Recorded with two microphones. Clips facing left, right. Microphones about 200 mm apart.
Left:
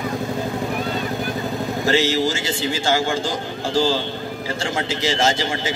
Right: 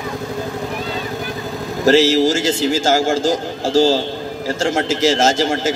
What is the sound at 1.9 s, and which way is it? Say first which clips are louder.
A man's voice: right 7 dB; 45° right (ahead or behind).